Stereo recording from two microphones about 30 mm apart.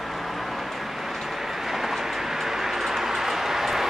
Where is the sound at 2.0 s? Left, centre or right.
Centre.